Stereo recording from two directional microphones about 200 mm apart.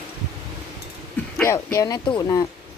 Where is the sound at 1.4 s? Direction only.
15° left (ahead or behind).